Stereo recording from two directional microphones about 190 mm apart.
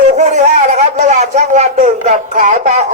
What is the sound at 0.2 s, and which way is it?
Speech, 40° right (ahead or behind).